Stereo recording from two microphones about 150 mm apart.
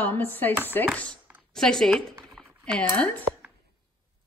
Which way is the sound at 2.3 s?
5° left (ahead or behind).